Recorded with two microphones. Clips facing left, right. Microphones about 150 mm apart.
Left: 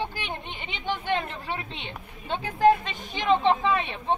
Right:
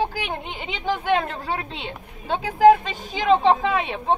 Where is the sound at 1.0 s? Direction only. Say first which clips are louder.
Right 7 dB; 90° right.